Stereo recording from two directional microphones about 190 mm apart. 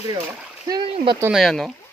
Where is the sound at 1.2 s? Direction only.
Centre (ahead or behind).